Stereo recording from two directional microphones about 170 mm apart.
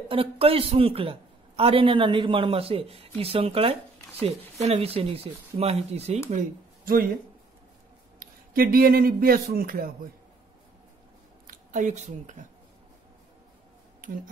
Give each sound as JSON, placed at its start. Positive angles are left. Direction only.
{"t": 0.1, "sound": "a man's voice", "side_deg": -35}
{"t": 6.3, "sound": "speech", "side_deg": -55}
{"t": 8.2, "sound": "speech", "side_deg": -60}
{"t": 11.4, "sound": "speech", "side_deg": -50}
{"t": 14.0, "sound": "a sound", "side_deg": -50}